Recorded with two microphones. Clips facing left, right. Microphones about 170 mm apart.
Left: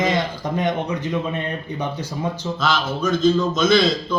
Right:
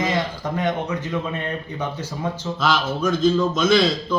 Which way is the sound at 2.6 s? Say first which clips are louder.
Right 1 dB; 10° right (ahead or behind).